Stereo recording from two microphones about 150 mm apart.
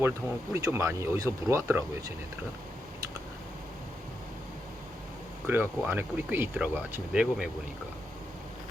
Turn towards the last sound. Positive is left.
turn(degrees=-5)  # may be behind; listen again after turning